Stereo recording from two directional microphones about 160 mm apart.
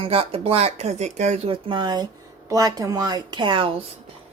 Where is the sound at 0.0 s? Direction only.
35° right (ahead or behind).